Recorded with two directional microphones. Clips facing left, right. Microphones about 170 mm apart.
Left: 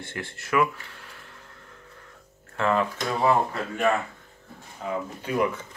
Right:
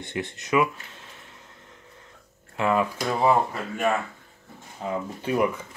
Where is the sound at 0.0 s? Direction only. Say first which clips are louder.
Right 4 dB; 20° right (ahead or behind).